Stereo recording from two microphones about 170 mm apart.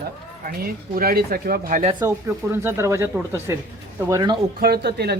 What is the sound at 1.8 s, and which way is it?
Speech, 30° right (ahead or behind).